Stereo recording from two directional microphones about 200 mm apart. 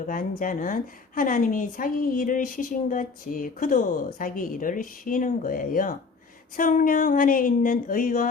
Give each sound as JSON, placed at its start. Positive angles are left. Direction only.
{"t": 0.0, "sound": "a woman's voice", "side_deg": 45}